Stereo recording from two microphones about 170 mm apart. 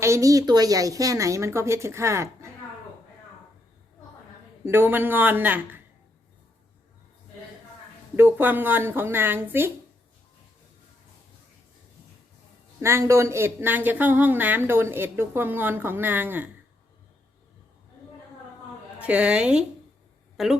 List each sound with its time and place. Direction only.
0.0 s speech: 20° right (ahead or behind)
4.6 s speech: 15° right (ahead or behind)
8.1 s speech: 10° right (ahead or behind)
12.8 s speech: 15° right (ahead or behind)
18.9 s speech: 10° right (ahead or behind)